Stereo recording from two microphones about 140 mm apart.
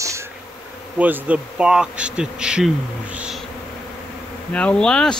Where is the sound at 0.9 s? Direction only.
10° right (ahead or behind).